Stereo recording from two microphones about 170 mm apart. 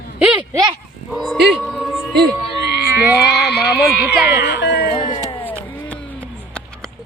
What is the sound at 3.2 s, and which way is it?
Speech, 75° left (ahead or behind).